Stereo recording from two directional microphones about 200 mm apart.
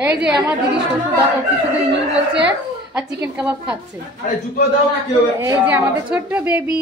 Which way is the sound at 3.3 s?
5° right (ahead or behind).